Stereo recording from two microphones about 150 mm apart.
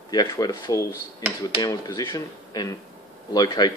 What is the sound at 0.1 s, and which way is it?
Speech, 25° left (ahead or behind).